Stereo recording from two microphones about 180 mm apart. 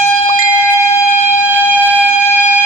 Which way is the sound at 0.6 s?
15° left (ahead or behind).